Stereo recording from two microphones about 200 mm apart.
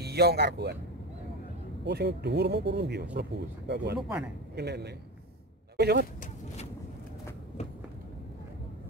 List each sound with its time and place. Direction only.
0.0 s speech: 55° right (ahead or behind)
1.9 s speech: 55° right (ahead or behind)